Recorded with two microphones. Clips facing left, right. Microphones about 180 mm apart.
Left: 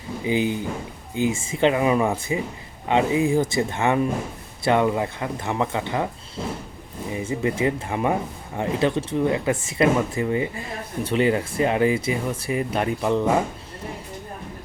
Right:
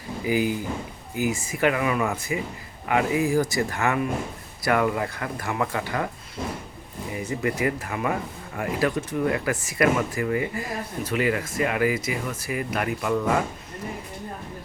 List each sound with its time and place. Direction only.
0.3 s speech: 25° left (ahead or behind)